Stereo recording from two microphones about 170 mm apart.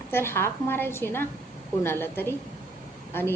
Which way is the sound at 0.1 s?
15° left (ahead or behind).